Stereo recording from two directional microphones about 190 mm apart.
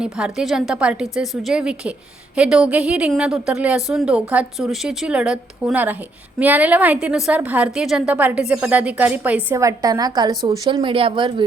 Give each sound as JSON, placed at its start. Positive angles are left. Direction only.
{"t": 0.0, "sound": "a woman's voice", "side_deg": -5}